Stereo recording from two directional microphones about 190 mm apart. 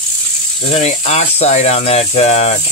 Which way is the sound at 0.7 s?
35° left (ahead or behind).